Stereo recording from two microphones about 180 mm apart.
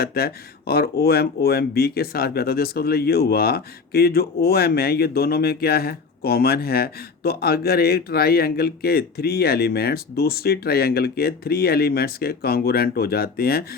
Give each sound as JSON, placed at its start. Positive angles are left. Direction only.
{"t": 0.0, "sound": "speech", "side_deg": 60}